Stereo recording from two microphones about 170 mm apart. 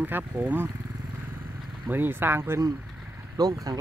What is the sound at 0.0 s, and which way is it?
Speech, 10° right (ahead or behind).